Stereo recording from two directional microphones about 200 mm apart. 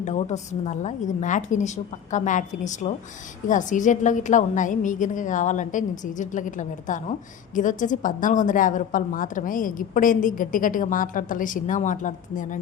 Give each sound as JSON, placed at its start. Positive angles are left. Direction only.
{"t": 0.0, "sound": "a woman's voice", "side_deg": 35}